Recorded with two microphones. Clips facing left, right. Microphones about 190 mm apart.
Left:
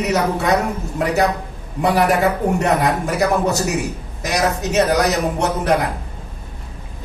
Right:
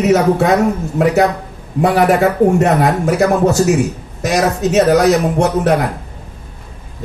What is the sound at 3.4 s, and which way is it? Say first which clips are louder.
Speech: right 7 dB; 50° right (ahead or behind).